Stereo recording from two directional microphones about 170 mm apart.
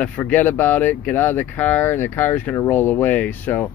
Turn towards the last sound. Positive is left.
turn(degrees=10)  # may be behind; listen again after turning